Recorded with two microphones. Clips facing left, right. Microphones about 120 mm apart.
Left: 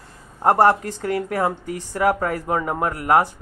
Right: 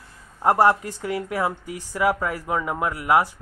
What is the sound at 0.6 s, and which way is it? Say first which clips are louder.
Speech: left 2 dB; 10° right (ahead or behind).